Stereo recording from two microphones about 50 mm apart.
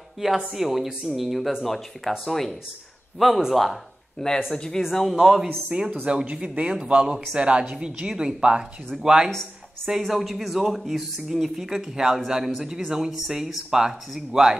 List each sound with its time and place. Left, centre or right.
0.5 s speech: centre
4.5 s speech: centre
5.1 s speech: centre
5.7 s speech: right